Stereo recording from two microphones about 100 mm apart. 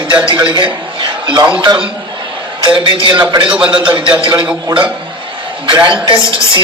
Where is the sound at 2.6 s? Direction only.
60° right (ahead or behind).